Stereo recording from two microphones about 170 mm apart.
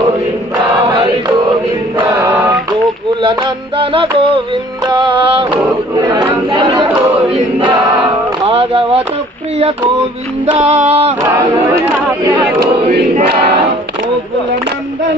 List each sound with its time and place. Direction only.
2.0 s choir: 20° right (ahead or behind)
3.2 s music: 30° right (ahead or behind)
6.0 s chatter: 25° right (ahead or behind)
7.6 s a sound: 30° right (ahead or behind)
10.5 s music: 40° right (ahead or behind)
11.2 s choir: 15° right (ahead or behind)